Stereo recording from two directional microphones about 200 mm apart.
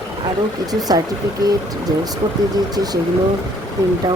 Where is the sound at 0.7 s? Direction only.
20° right (ahead or behind).